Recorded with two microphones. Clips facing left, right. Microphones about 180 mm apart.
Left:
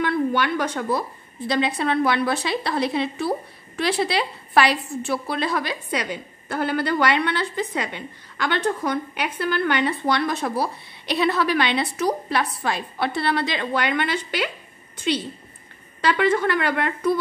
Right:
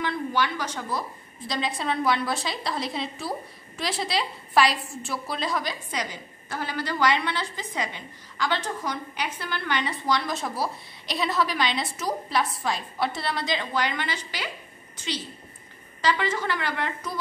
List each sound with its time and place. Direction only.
0.0 s a woman's voice: 60° left (ahead or behind)